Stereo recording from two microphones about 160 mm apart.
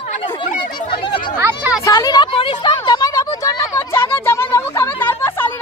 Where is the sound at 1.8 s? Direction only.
25° left (ahead or behind).